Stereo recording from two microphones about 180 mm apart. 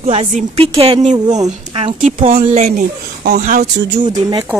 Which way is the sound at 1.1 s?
20° right (ahead or behind).